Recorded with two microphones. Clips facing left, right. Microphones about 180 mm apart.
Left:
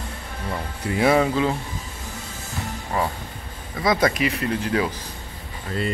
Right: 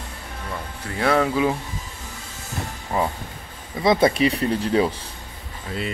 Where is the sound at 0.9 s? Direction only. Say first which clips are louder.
Left 2 dB; 10° left (ahead or behind).